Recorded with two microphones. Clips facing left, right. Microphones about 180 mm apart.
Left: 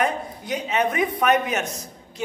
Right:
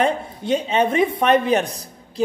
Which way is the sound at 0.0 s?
25° right (ahead or behind).